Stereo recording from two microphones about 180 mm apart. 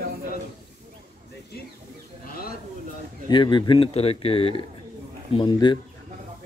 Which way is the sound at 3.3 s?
25° left (ahead or behind).